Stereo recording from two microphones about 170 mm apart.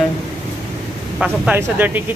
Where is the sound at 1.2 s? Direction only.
10° right (ahead or behind).